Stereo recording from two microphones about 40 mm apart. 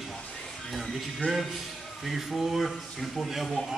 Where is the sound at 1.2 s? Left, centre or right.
Left.